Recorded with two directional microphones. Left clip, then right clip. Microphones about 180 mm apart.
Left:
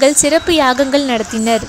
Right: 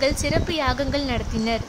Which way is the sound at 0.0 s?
25° left (ahead or behind).